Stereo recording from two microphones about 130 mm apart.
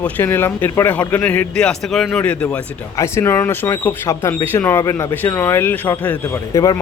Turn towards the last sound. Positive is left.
turn(degrees=25)  # may be behind; listen again after turning